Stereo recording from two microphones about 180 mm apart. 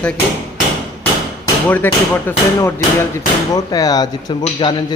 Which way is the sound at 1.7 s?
10° left (ahead or behind).